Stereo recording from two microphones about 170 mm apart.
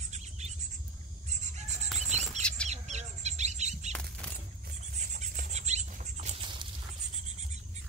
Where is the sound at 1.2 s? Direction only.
40° right (ahead or behind).